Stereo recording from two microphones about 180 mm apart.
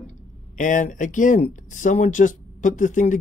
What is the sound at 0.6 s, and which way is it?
Speech, 45° left (ahead or behind).